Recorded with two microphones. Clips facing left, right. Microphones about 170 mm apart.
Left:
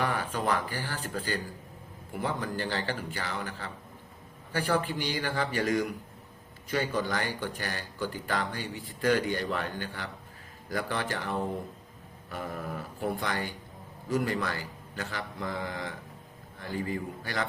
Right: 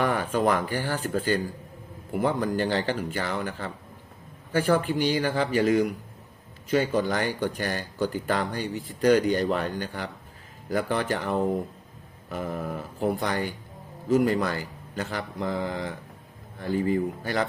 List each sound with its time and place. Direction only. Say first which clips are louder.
0.0 s speech: right 6 dB; 45° right (ahead or behind)
6.7 s speech: right 6 dB; 45° right (ahead or behind)